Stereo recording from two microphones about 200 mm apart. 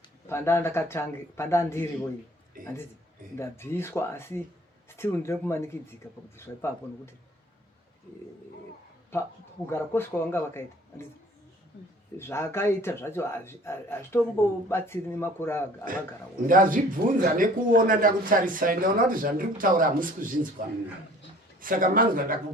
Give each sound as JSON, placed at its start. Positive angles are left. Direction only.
{"t": 0.3, "sound": "speech", "side_deg": 10}
{"t": 2.5, "sound": "speech", "side_deg": -45}
{"t": 3.3, "sound": "speech", "side_deg": 10}
{"t": 9.6, "sound": "speech", "side_deg": 10}
{"t": 12.1, "sound": "speech", "side_deg": 15}
{"t": 16.5, "sound": "speech", "side_deg": -45}
{"t": 21.6, "sound": "speech", "side_deg": -45}